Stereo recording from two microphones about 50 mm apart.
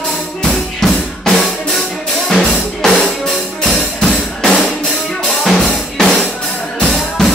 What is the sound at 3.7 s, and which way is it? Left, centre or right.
Music, left.